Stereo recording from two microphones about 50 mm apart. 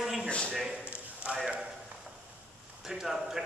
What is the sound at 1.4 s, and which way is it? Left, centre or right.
Speech, centre.